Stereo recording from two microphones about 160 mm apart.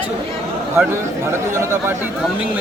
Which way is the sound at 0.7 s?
15° right (ahead or behind).